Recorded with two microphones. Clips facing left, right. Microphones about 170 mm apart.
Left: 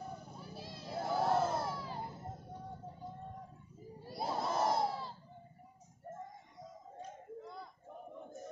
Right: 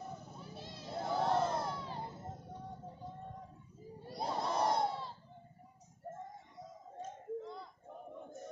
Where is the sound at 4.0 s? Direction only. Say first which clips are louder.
Even; centre (ahead or behind).